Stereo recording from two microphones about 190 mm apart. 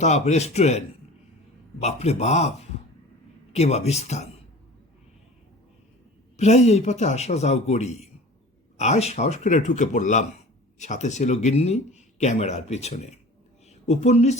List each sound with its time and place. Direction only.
0.0 s speech: 35° left (ahead or behind)
3.5 s speech: 35° left (ahead or behind)
6.3 s speech: 35° left (ahead or behind)